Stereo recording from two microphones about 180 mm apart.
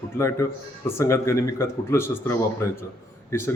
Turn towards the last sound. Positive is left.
turn(degrees=15)  # may be behind; listen again after turning